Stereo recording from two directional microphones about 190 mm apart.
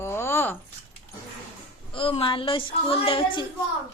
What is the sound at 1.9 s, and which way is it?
A woman's voice, 30° left (ahead or behind).